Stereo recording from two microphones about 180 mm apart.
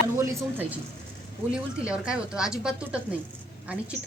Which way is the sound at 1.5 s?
5° right (ahead or behind).